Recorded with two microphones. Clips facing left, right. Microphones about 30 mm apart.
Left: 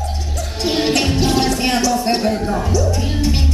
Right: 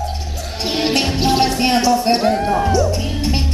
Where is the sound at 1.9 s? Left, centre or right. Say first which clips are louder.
Right 3 dB; centre.